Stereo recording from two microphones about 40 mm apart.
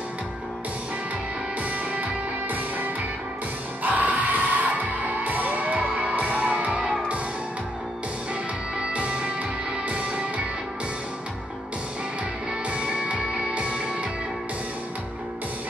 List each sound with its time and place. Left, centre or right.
1.6 s music: right
8.9 s music: right
12.6 s music: right